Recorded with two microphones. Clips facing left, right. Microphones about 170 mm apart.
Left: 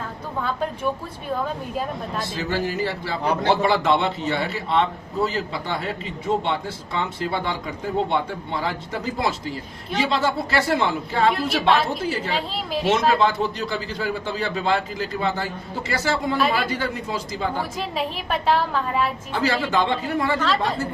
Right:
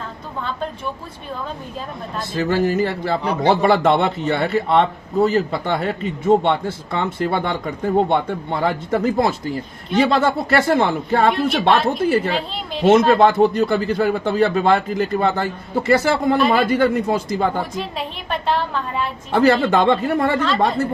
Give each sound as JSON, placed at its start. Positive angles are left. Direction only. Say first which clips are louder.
{"t": 2.3, "sound": "a man's voice", "louder": "right 9 dB", "side_deg": -50}
{"t": 17.7, "sound": "a woman's voice", "louder": "even", "side_deg": 5}
{"t": 19.3, "sound": "speech", "louder": "right 11 dB", "side_deg": -55}